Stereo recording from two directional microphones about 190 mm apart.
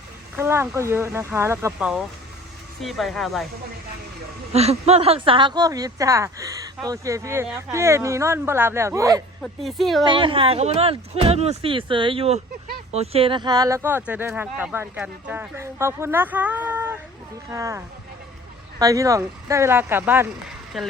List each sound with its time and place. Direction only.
0.3 s speech: 15° right (ahead or behind)
4.5 s speech: 35° right (ahead or behind); by 9.2 s 15° right (ahead or behind)
9.4 s speech: centre (ahead or behind)
10.0 s speech: 25° right (ahead or behind)
20.7 s speech: centre (ahead or behind)